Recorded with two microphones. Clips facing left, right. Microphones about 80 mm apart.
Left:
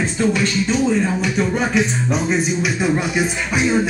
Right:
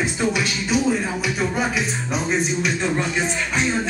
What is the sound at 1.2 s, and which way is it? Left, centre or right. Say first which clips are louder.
Music: left 3 dB; centre.